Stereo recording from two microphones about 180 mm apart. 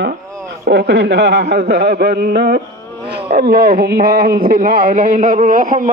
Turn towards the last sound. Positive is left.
turn(degrees=-45)  # may be behind; listen again after turning